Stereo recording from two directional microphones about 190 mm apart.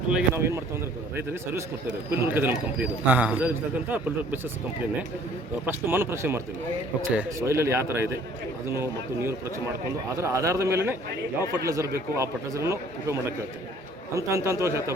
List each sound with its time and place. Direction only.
0.2 s a man's voice: 15° right (ahead or behind)
5.6 s a man's voice: 10° right (ahead or behind)